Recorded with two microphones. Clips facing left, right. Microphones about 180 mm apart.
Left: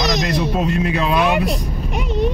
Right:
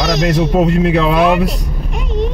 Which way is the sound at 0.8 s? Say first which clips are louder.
Right 5 dB; 70° right (ahead or behind).